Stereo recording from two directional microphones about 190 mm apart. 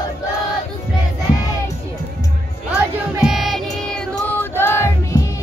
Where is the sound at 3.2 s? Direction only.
Centre (ahead or behind).